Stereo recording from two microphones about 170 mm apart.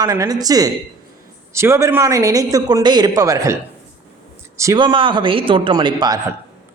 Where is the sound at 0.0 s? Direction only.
20° right (ahead or behind).